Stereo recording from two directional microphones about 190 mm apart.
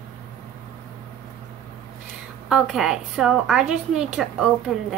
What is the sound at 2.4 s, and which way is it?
A woman's voice, centre (ahead or behind).